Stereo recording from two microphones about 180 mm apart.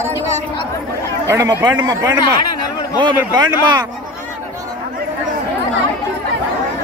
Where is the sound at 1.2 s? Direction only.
15° right (ahead or behind).